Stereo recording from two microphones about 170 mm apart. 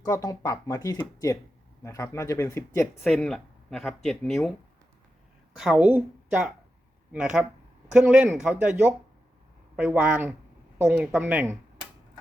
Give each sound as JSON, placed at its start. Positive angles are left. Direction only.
{"t": 0.0, "sound": "speech", "side_deg": 20}
{"t": 3.0, "sound": "speech", "side_deg": 5}
{"t": 5.7, "sound": "speech", "side_deg": -10}